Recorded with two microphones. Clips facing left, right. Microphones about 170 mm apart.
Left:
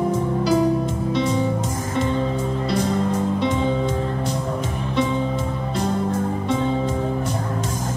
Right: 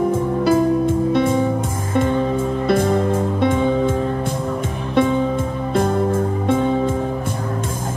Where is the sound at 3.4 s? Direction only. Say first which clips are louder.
Right 7 dB; 55° right (ahead or behind).